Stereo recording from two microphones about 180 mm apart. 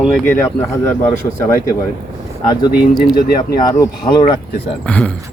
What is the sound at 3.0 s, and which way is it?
Speech, 60° left (ahead or behind).